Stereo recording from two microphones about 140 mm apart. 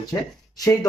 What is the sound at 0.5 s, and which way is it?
Speech, 25° left (ahead or behind).